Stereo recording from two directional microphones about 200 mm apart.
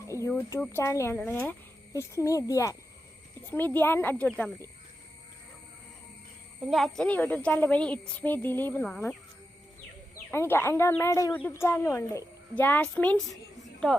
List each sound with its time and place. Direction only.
0.1 s a woman's voice: 15° left (ahead or behind)
3.8 s a woman's voice: 10° left (ahead or behind)
6.6 s a woman's voice: centre (ahead or behind)
10.3 s a woman's voice: 10° left (ahead or behind)